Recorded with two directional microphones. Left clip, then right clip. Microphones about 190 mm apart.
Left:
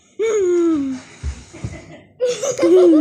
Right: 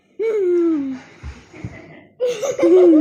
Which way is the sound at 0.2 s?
35° left (ahead or behind).